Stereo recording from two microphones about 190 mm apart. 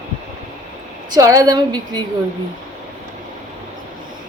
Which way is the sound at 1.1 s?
20° right (ahead or behind).